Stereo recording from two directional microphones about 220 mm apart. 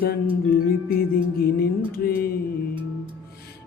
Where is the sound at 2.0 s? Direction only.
45° left (ahead or behind).